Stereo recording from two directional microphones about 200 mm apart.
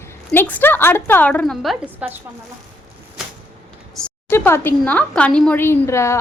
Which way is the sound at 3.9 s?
10° left (ahead or behind).